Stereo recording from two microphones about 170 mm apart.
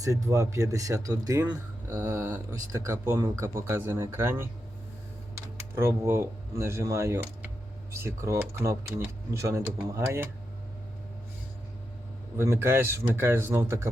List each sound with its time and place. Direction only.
0.0 s speech: 20° right (ahead or behind)
5.5 s speech: 15° right (ahead or behind)
12.4 s speech: 15° right (ahead or behind)